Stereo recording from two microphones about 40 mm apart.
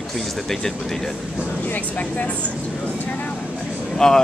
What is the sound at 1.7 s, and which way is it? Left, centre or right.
Speech, left.